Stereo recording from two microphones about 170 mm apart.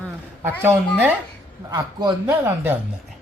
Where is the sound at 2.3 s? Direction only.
10° right (ahead or behind).